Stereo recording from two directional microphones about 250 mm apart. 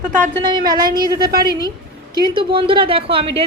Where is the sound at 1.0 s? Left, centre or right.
Right.